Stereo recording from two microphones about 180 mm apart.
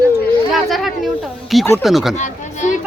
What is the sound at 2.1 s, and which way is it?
Speech, 45° left (ahead or behind).